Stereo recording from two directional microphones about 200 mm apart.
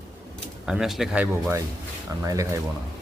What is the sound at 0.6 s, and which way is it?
Speech, centre (ahead or behind).